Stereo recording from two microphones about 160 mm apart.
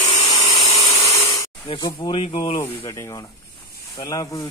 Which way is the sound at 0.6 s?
40° left (ahead or behind).